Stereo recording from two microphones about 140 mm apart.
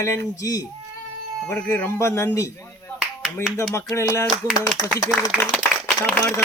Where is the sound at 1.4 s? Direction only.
15° left (ahead or behind).